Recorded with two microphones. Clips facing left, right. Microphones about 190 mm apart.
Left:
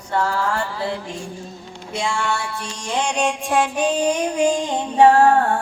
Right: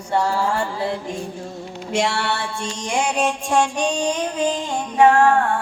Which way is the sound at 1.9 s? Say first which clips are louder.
Right 2 dB; 70° right (ahead or behind).